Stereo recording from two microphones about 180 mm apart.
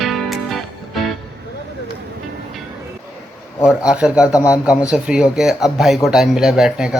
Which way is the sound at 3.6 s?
5° right (ahead or behind).